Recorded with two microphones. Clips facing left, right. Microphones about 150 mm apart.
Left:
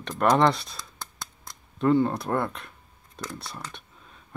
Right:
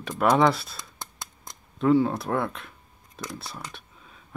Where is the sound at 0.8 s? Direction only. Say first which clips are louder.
Even; 20° right (ahead or behind).